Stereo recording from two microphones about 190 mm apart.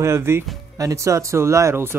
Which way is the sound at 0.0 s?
15° right (ahead or behind).